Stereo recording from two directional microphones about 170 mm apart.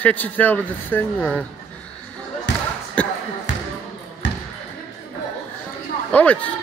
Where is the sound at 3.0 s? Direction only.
5° left (ahead or behind).